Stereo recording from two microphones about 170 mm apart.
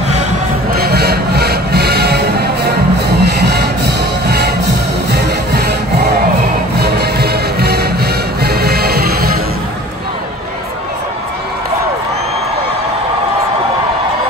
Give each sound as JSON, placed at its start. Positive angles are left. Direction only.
{"t": 0.7, "sound": "music", "side_deg": -65}